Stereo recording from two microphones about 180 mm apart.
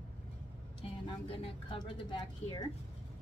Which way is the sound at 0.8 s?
30° left (ahead or behind).